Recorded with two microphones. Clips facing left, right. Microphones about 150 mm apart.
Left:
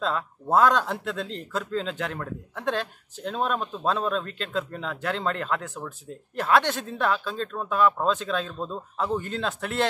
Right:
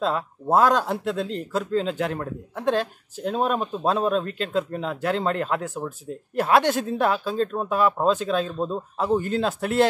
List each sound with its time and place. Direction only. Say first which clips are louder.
0.6 s speech: right 1 dB; 5° right (ahead or behind)